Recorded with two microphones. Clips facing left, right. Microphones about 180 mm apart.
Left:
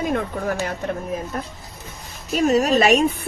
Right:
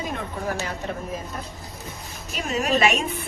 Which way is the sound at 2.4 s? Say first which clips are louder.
Left 6 dB; 40° left (ahead or behind).